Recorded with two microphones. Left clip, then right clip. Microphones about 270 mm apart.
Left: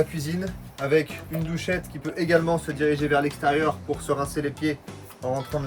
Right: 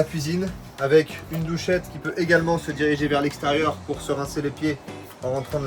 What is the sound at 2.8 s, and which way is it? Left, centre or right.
Speech, centre.